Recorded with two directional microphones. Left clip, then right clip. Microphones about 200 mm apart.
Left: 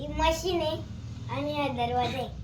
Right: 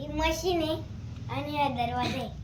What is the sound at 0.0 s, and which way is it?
Child singing, 15° right (ahead or behind).